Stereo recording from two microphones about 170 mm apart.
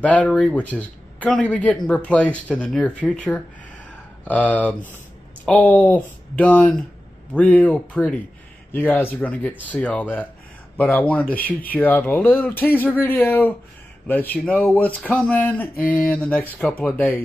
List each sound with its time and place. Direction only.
0.0 s a man's voice: 10° left (ahead or behind)
11.3 s speech: 60° left (ahead or behind)
11.7 s a man's voice: 10° left (ahead or behind)